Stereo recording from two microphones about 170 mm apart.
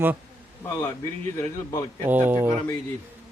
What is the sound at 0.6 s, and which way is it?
Speech, 15° left (ahead or behind).